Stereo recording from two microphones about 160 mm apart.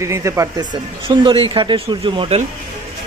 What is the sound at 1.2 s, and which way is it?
Speech, 30° right (ahead or behind).